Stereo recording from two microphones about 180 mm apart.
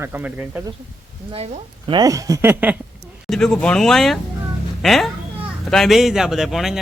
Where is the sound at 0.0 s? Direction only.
10° right (ahead or behind).